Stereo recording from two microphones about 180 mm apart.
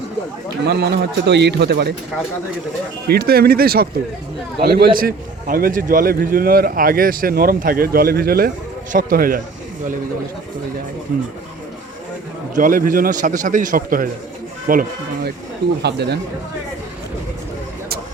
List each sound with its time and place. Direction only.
0.6 s a man's voice: 65° right (ahead or behind)
3.1 s a man's voice: 60° right (ahead or behind)
12.5 s a man's voice: 50° right (ahead or behind)
15.8 s a man's voice: 70° right (ahead or behind)